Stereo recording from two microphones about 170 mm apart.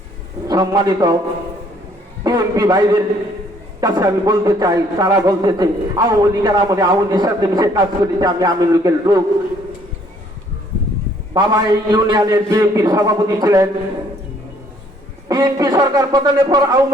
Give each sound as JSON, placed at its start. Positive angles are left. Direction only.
{"t": 0.4, "sound": "a man's voice", "side_deg": -20}
{"t": 2.2, "sound": "a man's voice", "side_deg": -20}
{"t": 11.3, "sound": "a man's voice", "side_deg": -25}
{"t": 15.3, "sound": "a man's voice", "side_deg": -20}